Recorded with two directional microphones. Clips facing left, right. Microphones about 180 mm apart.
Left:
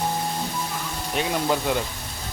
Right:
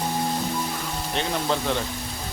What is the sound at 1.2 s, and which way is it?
Speech, 10° left (ahead or behind).